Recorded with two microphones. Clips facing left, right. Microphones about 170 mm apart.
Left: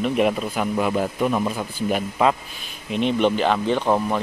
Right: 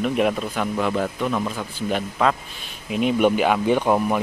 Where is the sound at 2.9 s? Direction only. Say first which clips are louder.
Right 1 dB; 5° right (ahead or behind).